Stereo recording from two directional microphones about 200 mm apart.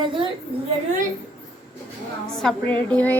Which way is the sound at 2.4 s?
5° left (ahead or behind).